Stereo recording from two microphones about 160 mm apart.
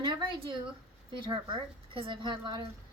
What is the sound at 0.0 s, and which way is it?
A woman's voice, 30° right (ahead or behind).